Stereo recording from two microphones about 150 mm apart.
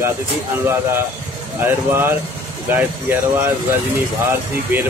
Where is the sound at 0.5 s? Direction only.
15° right (ahead or behind).